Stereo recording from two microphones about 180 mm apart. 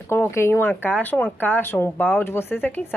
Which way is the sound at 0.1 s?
15° left (ahead or behind).